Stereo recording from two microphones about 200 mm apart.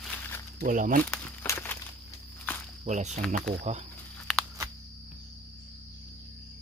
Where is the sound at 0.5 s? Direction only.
40° right (ahead or behind).